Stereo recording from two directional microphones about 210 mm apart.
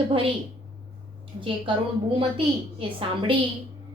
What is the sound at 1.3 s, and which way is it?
Speech, 25° right (ahead or behind).